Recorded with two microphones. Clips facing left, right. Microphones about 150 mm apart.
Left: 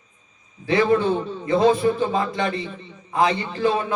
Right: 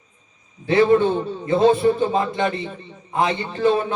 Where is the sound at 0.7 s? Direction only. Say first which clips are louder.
Right 3 dB; 30° right (ahead or behind).